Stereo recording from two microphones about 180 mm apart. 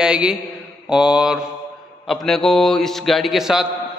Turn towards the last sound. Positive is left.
turn(degrees=0)  # may be behind; listen again after turning